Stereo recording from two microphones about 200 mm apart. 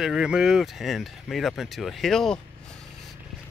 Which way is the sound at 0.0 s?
5° right (ahead or behind).